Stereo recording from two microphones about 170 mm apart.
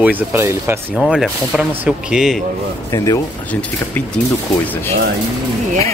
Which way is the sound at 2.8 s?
20° left (ahead or behind).